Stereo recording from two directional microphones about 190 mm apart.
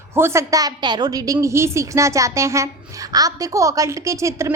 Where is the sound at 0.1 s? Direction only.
15° right (ahead or behind).